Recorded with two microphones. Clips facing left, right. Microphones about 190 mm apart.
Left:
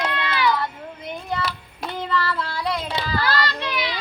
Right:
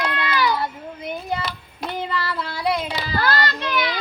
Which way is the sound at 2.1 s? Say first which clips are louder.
Left 2 dB; 10° right (ahead or behind).